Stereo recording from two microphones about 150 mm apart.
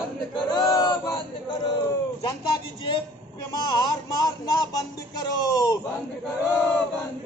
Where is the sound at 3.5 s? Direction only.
25° left (ahead or behind).